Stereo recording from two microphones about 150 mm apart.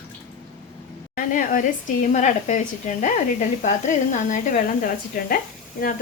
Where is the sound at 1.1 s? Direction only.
60° left (ahead or behind).